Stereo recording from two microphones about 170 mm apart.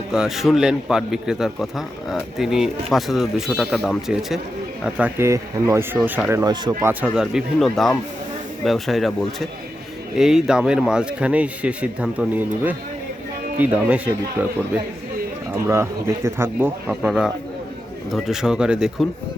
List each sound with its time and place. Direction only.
0.1 s speech: 5° right (ahead or behind)
6.4 s speech: 20° right (ahead or behind)
7.0 s speech: 5° right (ahead or behind)
13.6 s speech: 10° right (ahead or behind)
15.5 s speech: 15° right (ahead or behind)